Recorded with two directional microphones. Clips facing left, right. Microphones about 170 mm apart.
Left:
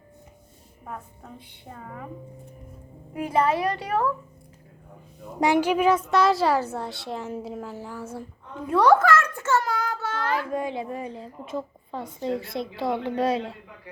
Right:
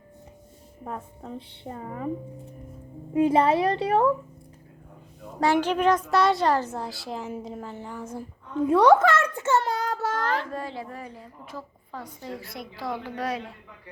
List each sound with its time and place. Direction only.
0.9 s a woman's voice: 30° right (ahead or behind)
3.2 s a woman's voice: 25° right (ahead or behind)
5.4 s a woman's voice: 15° left (ahead or behind)
8.7 s a sound: 20° right (ahead or behind)
9.6 s child singing: 35° right (ahead or behind)
10.3 s a woman's voice: 15° left (ahead or behind)